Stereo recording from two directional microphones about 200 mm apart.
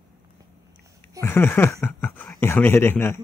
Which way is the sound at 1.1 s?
15° left (ahead or behind).